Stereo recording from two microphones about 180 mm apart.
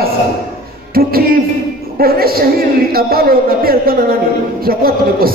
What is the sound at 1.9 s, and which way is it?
A man's voice, 55° right (ahead or behind).